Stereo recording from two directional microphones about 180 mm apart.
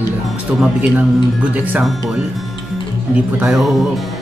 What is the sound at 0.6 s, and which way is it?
Speech, 10° right (ahead or behind).